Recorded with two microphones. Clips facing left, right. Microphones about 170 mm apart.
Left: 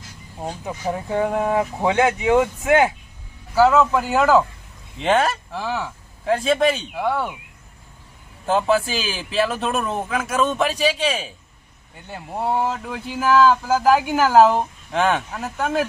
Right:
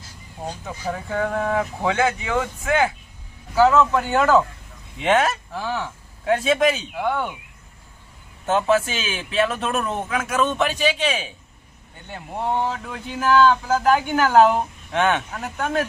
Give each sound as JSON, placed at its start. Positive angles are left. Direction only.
{"t": 0.4, "sound": "speech", "side_deg": 20}
{"t": 3.5, "sound": "speech", "side_deg": 5}
{"t": 8.4, "sound": "speech", "side_deg": 0}